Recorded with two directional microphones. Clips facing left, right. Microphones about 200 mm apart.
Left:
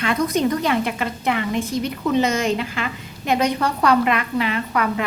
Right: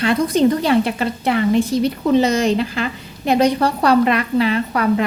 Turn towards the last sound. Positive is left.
turn(degrees=-35)  # may be behind; listen again after turning